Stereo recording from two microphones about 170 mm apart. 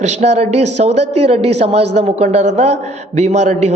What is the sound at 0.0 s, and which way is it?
A man's voice, 45° right (ahead or behind).